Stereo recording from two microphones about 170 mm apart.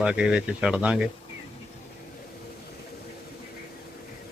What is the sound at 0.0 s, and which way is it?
Speech, 5° right (ahead or behind).